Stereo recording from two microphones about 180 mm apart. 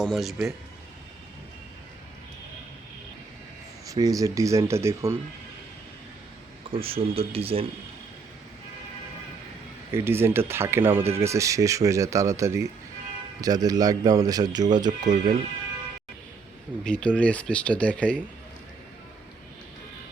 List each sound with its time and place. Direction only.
0.0 s speech: centre (ahead or behind)
3.8 s speech: 20° right (ahead or behind)
6.7 s speech: 30° right (ahead or behind)
9.9 s speech: 15° right (ahead or behind)
16.8 s speech: 5° left (ahead or behind)